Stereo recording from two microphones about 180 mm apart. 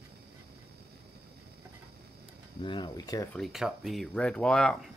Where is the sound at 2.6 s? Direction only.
25° left (ahead or behind).